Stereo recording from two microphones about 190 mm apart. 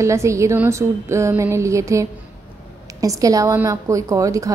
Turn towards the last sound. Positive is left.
turn(degrees=-15)  # may be behind; listen again after turning